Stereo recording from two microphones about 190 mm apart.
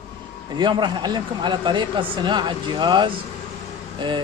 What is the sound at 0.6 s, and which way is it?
Speech, 25° right (ahead or behind).